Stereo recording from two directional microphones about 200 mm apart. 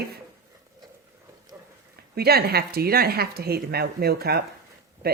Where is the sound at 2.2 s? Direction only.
50° right (ahead or behind).